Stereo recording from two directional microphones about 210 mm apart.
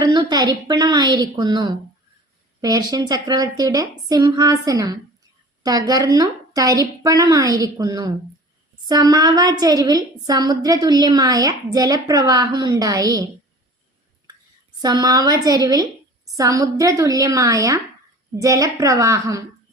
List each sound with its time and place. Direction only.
0.0 s a woman's voice: 20° right (ahead or behind)
14.8 s a woman's voice: 20° right (ahead or behind)